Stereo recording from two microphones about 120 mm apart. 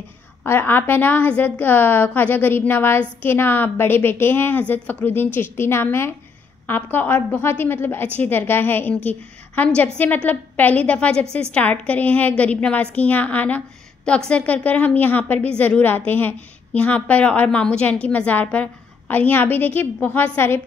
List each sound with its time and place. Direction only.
0.4 s a woman's voice: 20° left (ahead or behind)